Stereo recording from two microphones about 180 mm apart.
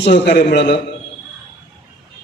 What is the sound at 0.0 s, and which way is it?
Speech, 70° left (ahead or behind).